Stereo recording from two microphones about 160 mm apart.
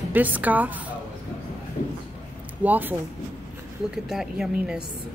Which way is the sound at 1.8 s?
55° left (ahead or behind).